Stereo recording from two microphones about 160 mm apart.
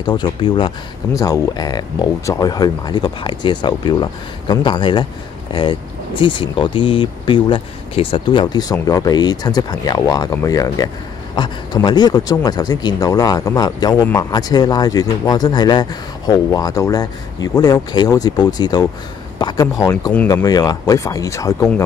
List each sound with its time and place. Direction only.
0.0 s speech: 25° left (ahead or behind)